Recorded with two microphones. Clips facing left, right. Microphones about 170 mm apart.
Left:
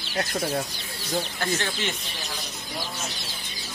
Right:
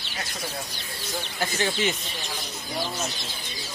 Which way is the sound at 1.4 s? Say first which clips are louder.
Right 2 dB; 10° right (ahead or behind).